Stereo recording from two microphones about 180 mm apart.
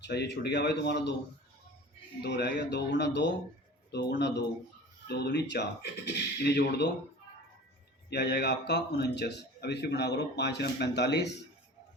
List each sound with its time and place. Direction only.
0.0 s a man's voice: 65° left (ahead or behind)
2.2 s a man's voice: 65° left (ahead or behind)
8.1 s a man's voice: 65° left (ahead or behind)